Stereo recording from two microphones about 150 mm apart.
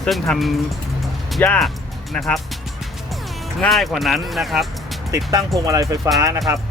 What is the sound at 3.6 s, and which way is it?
Speech, centre (ahead or behind).